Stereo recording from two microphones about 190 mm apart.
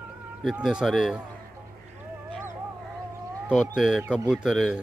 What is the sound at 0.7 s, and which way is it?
Speech, centre (ahead or behind).